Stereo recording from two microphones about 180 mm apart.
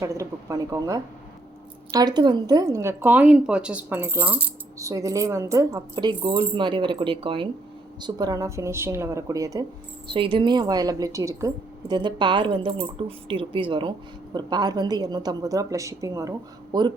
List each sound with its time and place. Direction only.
0.0 s a woman's voice: 15° right (ahead or behind)